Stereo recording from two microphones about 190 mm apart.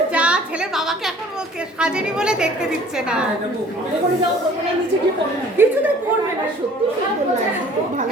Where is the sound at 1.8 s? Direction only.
5° right (ahead or behind).